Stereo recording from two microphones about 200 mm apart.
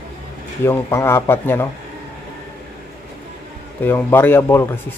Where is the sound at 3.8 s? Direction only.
10° left (ahead or behind).